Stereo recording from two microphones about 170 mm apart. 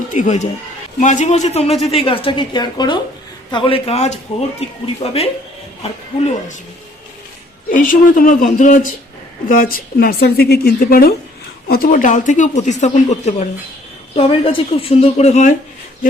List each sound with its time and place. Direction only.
0.1 s a woman's voice: 45° left (ahead or behind)
7.7 s a woman's voice: 50° left (ahead or behind)